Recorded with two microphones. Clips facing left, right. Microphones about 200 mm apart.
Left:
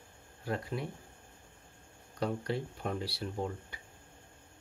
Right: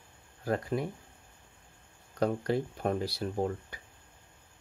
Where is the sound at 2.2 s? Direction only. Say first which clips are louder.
Right 5 dB; 45° right (ahead or behind).